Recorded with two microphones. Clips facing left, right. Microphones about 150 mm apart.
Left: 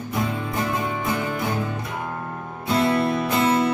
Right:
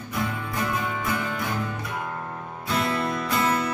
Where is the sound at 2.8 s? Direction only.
25° left (ahead or behind).